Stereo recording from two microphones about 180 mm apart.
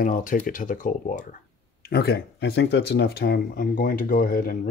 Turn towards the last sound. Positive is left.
turn(degrees=55)  # may be behind; listen again after turning